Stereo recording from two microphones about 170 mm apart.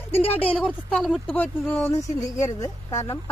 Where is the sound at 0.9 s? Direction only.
Centre (ahead or behind).